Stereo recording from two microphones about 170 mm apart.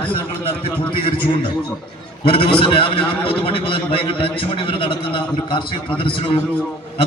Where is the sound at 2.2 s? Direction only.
30° left (ahead or behind).